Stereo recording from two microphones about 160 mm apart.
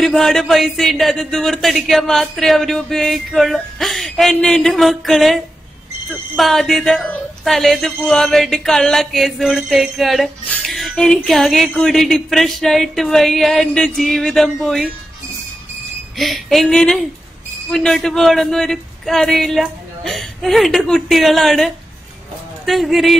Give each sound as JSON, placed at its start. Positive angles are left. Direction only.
{"t": 0.0, "sound": "speech", "side_deg": 0}
{"t": 16.2, "sound": "speech", "side_deg": 0}